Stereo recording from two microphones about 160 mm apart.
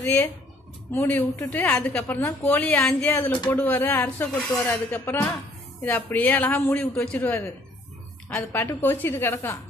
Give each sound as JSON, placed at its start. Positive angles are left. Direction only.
{"t": 0.0, "sound": "a man's voice", "side_deg": 15}
{"t": 2.0, "sound": "speech", "side_deg": 20}
{"t": 2.4, "sound": "a man's voice", "side_deg": 5}